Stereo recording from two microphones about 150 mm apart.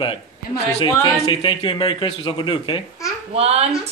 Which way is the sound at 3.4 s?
45° right (ahead or behind).